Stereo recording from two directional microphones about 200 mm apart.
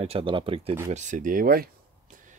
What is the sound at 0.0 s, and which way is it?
Speech, 30° right (ahead or behind).